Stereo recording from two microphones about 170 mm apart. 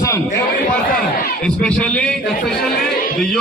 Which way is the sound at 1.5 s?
5° left (ahead or behind).